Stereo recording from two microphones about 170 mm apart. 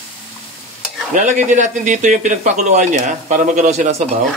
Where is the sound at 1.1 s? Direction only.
50° right (ahead or behind).